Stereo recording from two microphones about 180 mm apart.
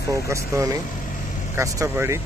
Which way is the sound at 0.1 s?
15° right (ahead or behind).